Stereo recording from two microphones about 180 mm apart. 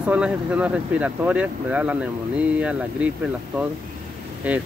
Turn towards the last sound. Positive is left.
turn(degrees=-10)  # may be behind; listen again after turning